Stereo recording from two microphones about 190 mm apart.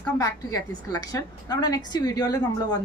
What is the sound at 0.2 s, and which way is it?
A woman's voice, 20° left (ahead or behind).